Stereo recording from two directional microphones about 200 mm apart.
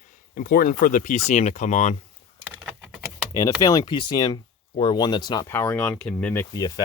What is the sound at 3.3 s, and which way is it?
Speech, 20° left (ahead or behind).